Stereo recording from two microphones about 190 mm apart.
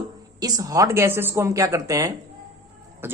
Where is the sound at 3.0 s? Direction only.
10° right (ahead or behind).